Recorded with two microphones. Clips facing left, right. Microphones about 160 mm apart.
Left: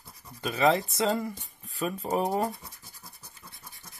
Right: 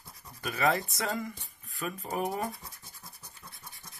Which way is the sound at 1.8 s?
30° left (ahead or behind).